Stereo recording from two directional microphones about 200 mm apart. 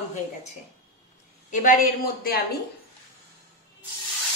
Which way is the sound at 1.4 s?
40° left (ahead or behind).